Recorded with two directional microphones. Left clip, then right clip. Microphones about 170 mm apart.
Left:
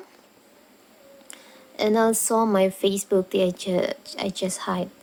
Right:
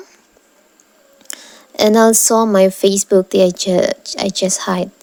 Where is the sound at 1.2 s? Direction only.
50° right (ahead or behind).